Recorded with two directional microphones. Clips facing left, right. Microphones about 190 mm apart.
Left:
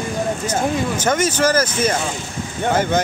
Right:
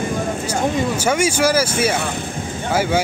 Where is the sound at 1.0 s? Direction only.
10° right (ahead or behind).